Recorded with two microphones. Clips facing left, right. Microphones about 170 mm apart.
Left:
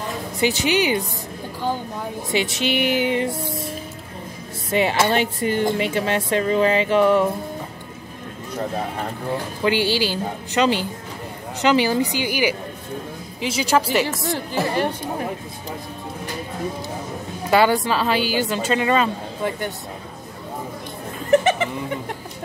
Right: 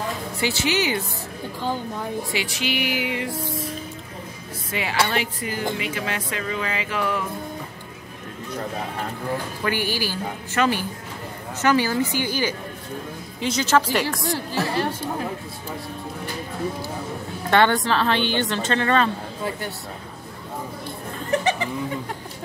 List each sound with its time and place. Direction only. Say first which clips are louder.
0.4 s speech: left 4 dB; 20° left (ahead or behind)
2.3 s speech: left 9 dB; 25° left (ahead or behind)
4.6 s speech: left 6 dB; 25° left (ahead or behind)
9.6 s speech: left 7 dB; 20° left (ahead or behind); by 14.2 s 5° left (ahead or behind)
14.2 s speech: left 2 dB; 20° left (ahead or behind)
17.5 s speech: left 2 dB; 5° left (ahead or behind)